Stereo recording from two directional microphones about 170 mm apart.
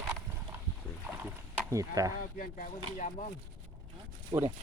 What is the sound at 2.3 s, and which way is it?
Speech, 55° left (ahead or behind).